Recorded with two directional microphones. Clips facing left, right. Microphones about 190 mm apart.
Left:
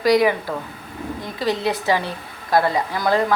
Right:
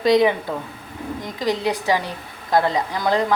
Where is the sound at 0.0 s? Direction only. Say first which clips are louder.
Even; 25° right (ahead or behind).